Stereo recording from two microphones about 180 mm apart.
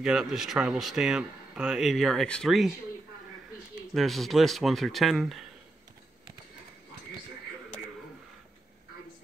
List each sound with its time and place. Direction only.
0.0 s speech: 5° right (ahead or behind)
3.9 s speech: centre (ahead or behind)